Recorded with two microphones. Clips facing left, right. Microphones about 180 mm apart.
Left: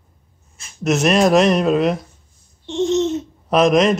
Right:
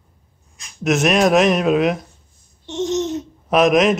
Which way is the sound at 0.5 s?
Centre (ahead or behind).